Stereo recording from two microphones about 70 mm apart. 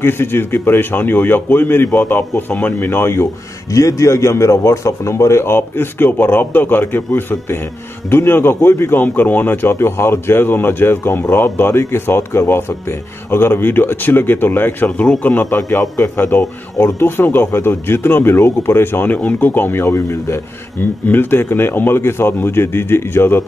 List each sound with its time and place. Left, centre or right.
0.0 s speech: left
3.7 s speech: left
9.0 s speech: left